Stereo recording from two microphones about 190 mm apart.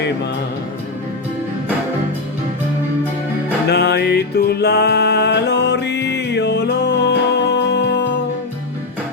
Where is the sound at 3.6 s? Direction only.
60° left (ahead or behind).